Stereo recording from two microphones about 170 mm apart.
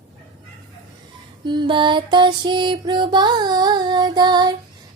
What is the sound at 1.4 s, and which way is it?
Music, 25° right (ahead or behind).